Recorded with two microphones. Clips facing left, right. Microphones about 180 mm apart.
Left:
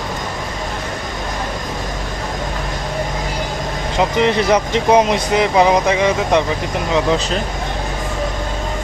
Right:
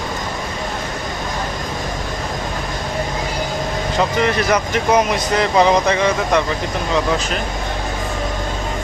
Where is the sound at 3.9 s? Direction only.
20° left (ahead or behind).